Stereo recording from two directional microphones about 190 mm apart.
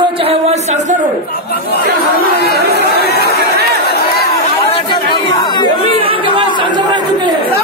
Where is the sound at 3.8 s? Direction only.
55° left (ahead or behind).